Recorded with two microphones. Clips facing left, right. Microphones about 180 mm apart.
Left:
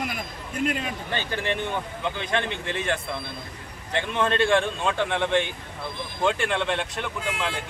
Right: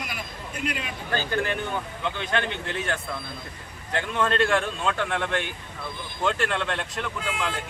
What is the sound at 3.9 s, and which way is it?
Speech, 20° left (ahead or behind).